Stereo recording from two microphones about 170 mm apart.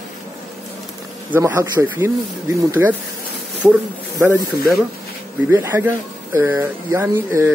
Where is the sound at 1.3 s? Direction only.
15° right (ahead or behind).